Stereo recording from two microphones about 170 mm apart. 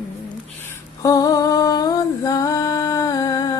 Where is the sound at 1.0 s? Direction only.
20° left (ahead or behind).